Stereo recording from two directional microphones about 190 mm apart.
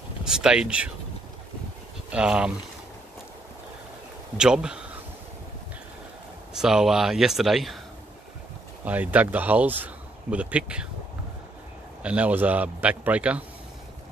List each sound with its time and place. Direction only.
0.2 s speech: 5° right (ahead or behind)
2.0 s speech: 5° right (ahead or behind)
4.4 s speech: 5° right (ahead or behind)
6.6 s speech: centre (ahead or behind)
8.8 s a man's voice: 10° right (ahead or behind)
12.0 s a man's voice: 5° right (ahead or behind)